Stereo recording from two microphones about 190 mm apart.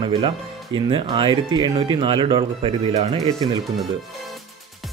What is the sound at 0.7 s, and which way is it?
Speech, 25° right (ahead or behind).